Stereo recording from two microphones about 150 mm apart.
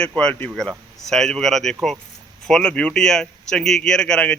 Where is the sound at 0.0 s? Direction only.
5° left (ahead or behind).